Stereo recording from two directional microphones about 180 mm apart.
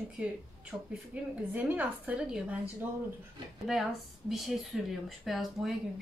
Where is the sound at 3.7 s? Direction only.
Centre (ahead or behind).